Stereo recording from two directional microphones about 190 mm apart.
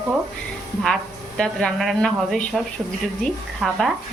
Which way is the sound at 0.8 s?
5° left (ahead or behind).